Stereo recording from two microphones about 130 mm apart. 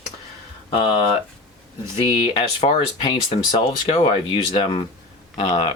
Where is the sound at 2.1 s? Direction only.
45° left (ahead or behind).